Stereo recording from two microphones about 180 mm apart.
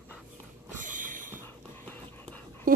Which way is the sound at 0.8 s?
45° right (ahead or behind).